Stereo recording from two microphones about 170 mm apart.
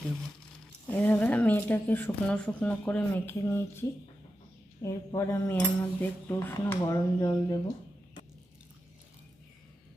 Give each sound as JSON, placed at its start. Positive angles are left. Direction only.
{"t": 0.9, "sound": "speech", "side_deg": 10}